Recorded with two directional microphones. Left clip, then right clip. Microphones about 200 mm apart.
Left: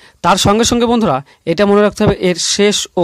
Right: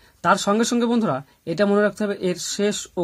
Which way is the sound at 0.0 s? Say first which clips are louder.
Left 7 dB; 35° left (ahead or behind).